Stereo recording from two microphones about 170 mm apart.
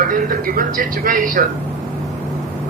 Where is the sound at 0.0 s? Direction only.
55° right (ahead or behind).